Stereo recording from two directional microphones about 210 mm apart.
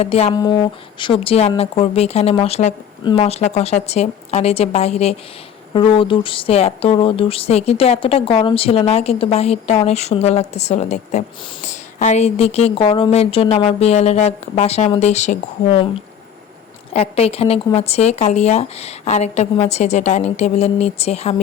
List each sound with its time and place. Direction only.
0.0 s speech: 30° left (ahead or behind)
0.3 s speech: 20° left (ahead or behind)
16.9 s speech: 30° left (ahead or behind)